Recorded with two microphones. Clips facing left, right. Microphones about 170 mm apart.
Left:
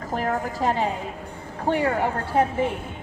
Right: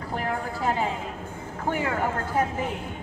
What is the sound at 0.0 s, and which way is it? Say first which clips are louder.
A woman's voice: left 4 dB; 40° left (ahead or behind).